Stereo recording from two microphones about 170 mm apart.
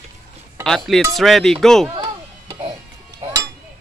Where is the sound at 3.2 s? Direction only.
20° right (ahead or behind).